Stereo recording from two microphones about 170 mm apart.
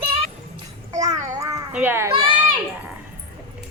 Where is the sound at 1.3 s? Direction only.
20° right (ahead or behind).